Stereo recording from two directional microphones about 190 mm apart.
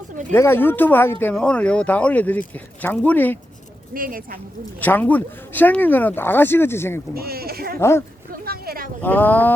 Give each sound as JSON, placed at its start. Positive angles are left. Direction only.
{"t": 0.3, "sound": "speech", "side_deg": 10}
{"t": 3.9, "sound": "speech", "side_deg": -50}
{"t": 4.8, "sound": "speech", "side_deg": 10}
{"t": 7.1, "sound": "speech", "side_deg": -55}
{"t": 7.8, "sound": "speech", "side_deg": 15}
{"t": 8.3, "sound": "a sound", "side_deg": -50}
{"t": 9.0, "sound": "speech", "side_deg": 10}